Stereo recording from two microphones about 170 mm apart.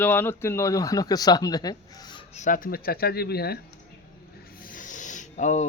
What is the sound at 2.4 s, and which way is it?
Speech, 50° left (ahead or behind).